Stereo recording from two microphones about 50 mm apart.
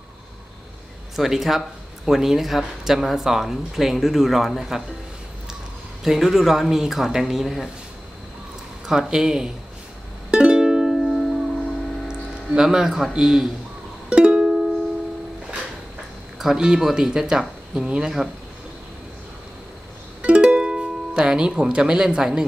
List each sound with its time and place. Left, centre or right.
1.1 s speech: centre
6.0 s speech: centre
8.8 s speech: centre
10.3 s music: centre
13.1 s speech: centre
14.0 s music: centre
16.3 s speech: centre
20.2 s music: right